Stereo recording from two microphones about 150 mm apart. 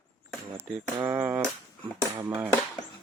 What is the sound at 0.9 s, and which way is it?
Speech, 10° right (ahead or behind).